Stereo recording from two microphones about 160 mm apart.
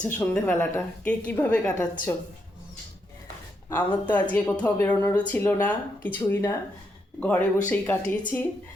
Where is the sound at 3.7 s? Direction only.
10° left (ahead or behind).